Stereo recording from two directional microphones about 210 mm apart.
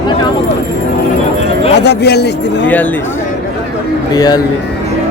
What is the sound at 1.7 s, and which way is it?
Speech, 50° left (ahead or behind).